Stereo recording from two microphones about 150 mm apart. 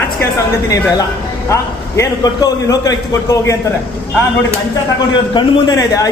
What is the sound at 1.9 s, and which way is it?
A man's voice, 25° left (ahead or behind).